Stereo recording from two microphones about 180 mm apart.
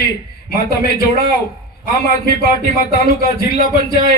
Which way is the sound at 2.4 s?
55° left (ahead or behind).